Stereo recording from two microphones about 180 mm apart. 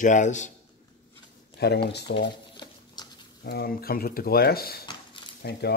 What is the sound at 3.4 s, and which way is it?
Speech, 60° left (ahead or behind).